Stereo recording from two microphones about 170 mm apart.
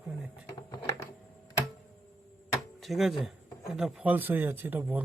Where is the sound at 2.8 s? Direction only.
Centre (ahead or behind).